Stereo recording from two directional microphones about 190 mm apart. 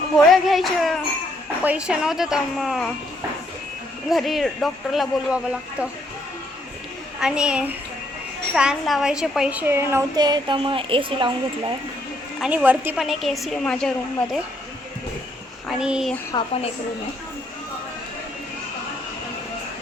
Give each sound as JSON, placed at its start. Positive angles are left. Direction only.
{"t": 0.4, "sound": "a woman's voice", "side_deg": 0}
{"t": 4.1, "sound": "a woman's voice", "side_deg": 0}
{"t": 7.2, "sound": "a woman's voice", "side_deg": -5}
{"t": 12.4, "sound": "a woman's voice", "side_deg": -10}
{"t": 15.8, "sound": "a woman's voice", "side_deg": -5}
{"t": 16.3, "sound": "a woman's voice", "side_deg": 30}